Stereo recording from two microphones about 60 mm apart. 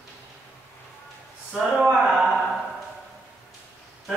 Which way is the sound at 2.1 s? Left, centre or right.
Centre.